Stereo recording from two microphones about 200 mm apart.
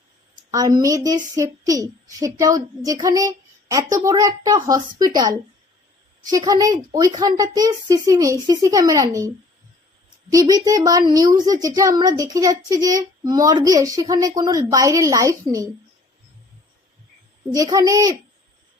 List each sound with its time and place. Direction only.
0.5 s a woman's voice: 20° right (ahead or behind)
10.3 s a child's voice: 20° right (ahead or behind)
17.5 s a woman's voice: 20° right (ahead or behind)